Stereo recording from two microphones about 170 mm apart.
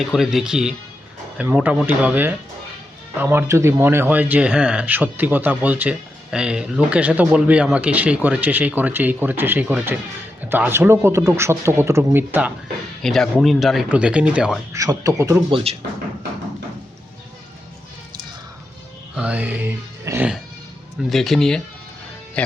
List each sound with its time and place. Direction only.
0.0 s speech: centre (ahead or behind)
13.0 s speech: centre (ahead or behind)
14.7 s speech: 20° right (ahead or behind)
15.4 s speech: 30° right (ahead or behind)
19.1 s music: 5° right (ahead or behind)
21.1 s speech: centre (ahead or behind)